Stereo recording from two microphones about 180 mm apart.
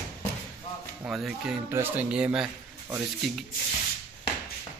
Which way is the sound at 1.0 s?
5° right (ahead or behind).